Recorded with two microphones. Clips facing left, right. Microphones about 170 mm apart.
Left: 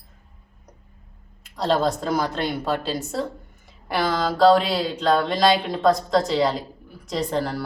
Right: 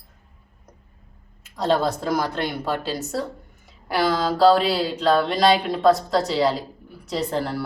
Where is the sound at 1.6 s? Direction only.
5° right (ahead or behind).